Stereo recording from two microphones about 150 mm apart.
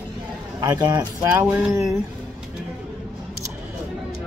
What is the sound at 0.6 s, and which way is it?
Speech, 25° right (ahead or behind).